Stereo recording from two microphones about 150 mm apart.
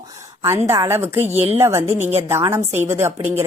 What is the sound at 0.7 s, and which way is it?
A woman's voice, 15° right (ahead or behind).